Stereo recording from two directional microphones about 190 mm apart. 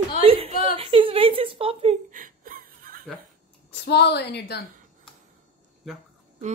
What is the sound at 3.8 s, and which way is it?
Speech, 60° left (ahead or behind).